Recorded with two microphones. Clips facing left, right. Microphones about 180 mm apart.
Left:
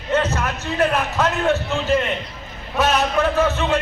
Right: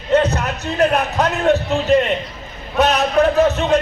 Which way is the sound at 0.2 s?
35° right (ahead or behind).